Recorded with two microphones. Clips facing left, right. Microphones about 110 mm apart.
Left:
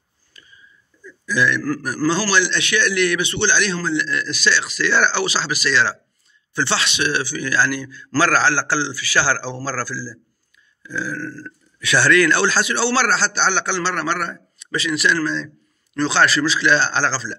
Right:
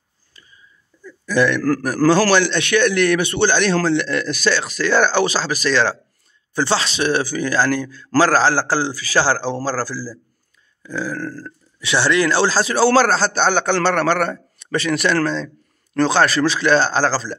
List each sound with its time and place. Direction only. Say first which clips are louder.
1.0 s speech: right 3 dB; 55° right (ahead or behind)
3.7 s a man's voice: right 4 dB; 65° right (ahead or behind); by 11.5 s 40° right (ahead or behind)
11.8 s speech: left 1 dB; 25° right (ahead or behind); by 17.4 s 45° right (ahead or behind)